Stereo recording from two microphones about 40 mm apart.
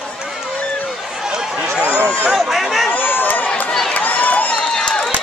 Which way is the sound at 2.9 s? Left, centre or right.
Left.